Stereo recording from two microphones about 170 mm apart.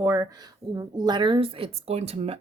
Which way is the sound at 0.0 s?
20° right (ahead or behind).